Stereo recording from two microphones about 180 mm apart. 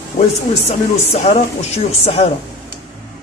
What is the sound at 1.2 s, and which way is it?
Speech, 35° left (ahead or behind).